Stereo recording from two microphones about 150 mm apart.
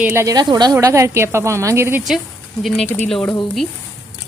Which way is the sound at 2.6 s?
Centre (ahead or behind).